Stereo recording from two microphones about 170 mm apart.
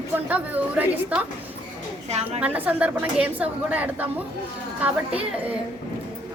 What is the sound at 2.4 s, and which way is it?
A woman's voice, 10° right (ahead or behind).